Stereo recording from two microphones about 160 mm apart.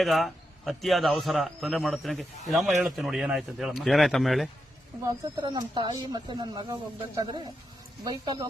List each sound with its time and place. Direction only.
0.0 s a man's voice: centre (ahead or behind)
5.0 s speech: 25° right (ahead or behind)
8.0 s speech: 25° right (ahead or behind)